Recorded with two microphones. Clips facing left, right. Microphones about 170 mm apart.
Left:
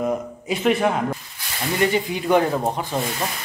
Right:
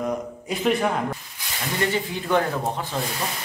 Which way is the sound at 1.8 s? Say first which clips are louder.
Left 4 dB; 15° left (ahead or behind).